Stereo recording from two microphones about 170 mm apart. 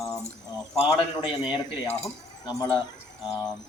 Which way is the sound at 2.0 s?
20° left (ahead or behind).